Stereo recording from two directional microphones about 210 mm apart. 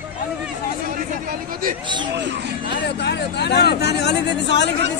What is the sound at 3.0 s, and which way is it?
Speech, 55° left (ahead or behind).